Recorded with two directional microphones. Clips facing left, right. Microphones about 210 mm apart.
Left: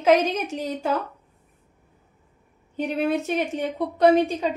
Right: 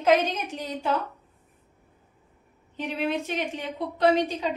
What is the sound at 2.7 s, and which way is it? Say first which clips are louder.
A woman's voice: left 5 dB; 45° left (ahead or behind).